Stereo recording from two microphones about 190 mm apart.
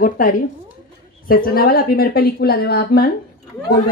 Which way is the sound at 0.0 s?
45° left (ahead or behind).